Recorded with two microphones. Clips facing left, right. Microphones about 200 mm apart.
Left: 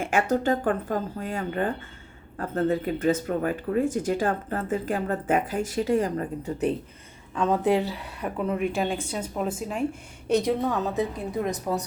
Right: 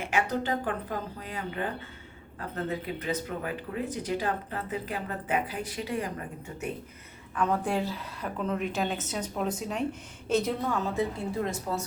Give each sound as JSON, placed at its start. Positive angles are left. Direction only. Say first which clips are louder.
{"t": 0.0, "sound": "speech", "louder": "left 5 dB", "side_deg": 45}
{"t": 7.3, "sound": "a woman's voice", "louder": "left 5 dB", "side_deg": 20}